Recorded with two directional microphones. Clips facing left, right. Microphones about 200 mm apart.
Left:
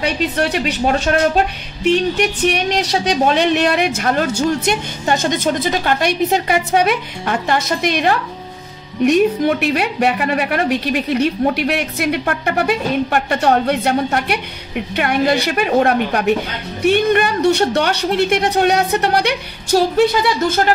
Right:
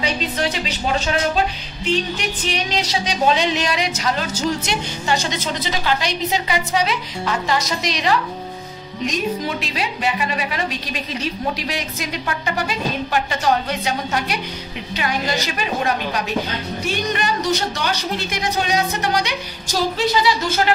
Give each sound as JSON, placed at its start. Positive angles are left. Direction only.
{"t": 0.0, "sound": "speech", "side_deg": 60}